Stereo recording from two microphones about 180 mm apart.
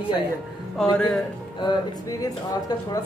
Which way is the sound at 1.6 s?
20° left (ahead or behind).